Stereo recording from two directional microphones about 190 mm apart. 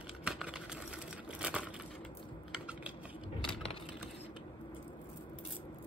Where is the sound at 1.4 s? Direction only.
5° right (ahead or behind).